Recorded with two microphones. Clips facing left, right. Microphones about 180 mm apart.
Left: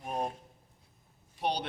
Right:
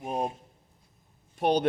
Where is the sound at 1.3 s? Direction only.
50° right (ahead or behind).